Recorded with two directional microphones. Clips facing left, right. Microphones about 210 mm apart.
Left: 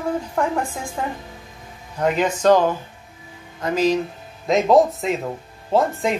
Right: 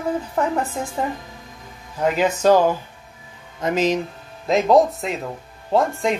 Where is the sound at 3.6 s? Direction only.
20° right (ahead or behind).